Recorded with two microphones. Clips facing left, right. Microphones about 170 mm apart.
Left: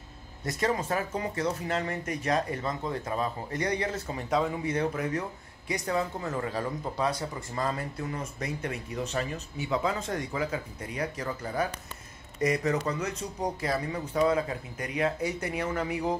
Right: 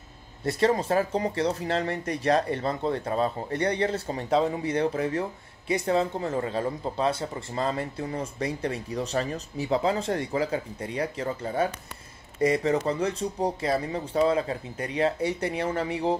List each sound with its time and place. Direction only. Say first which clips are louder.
0.5 s speech: right 5 dB; 30° right (ahead or behind)